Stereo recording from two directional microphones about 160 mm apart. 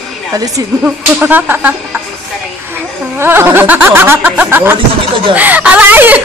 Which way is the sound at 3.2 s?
15° right (ahead or behind).